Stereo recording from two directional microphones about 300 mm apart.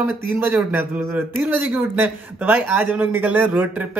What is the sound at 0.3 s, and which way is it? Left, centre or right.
Speech, centre.